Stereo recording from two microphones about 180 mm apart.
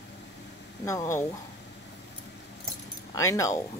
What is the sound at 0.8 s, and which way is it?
Speech, 15° left (ahead or behind).